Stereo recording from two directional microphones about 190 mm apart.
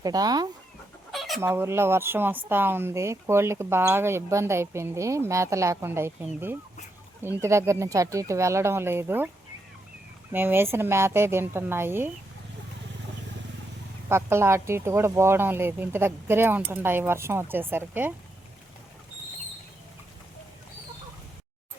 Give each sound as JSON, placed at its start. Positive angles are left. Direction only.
{"t": 0.0, "sound": "speech", "side_deg": -20}
{"t": 1.1, "sound": "chicken", "side_deg": 0}
{"t": 1.4, "sound": "speech", "side_deg": -15}
{"t": 10.3, "sound": "speech", "side_deg": -10}
{"t": 14.1, "sound": "speech", "side_deg": -15}